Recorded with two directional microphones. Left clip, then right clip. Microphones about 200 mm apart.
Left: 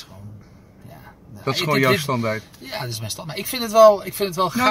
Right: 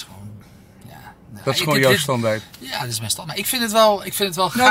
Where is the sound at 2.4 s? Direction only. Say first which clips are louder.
Right 3 dB; centre (ahead or behind).